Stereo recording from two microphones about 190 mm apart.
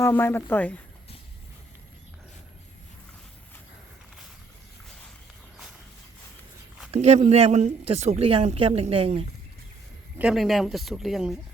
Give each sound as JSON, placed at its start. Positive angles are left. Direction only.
{"t": 0.0, "sound": "speech", "side_deg": 10}
{"t": 6.9, "sound": "speech", "side_deg": -35}
{"t": 10.2, "sound": "speech", "side_deg": -5}